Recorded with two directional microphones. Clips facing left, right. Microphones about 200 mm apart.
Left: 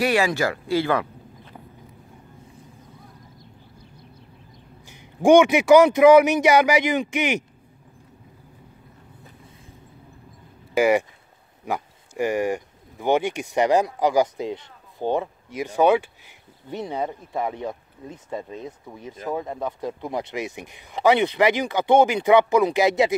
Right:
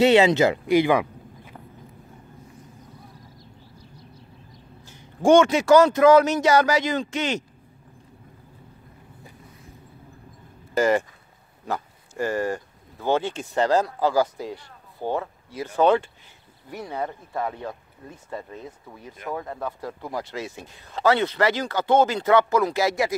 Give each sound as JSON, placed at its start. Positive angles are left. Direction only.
{"t": 0.0, "sound": "speech", "side_deg": -20}
{"t": 4.8, "sound": "speech", "side_deg": 15}
{"t": 10.8, "sound": "speech", "side_deg": 10}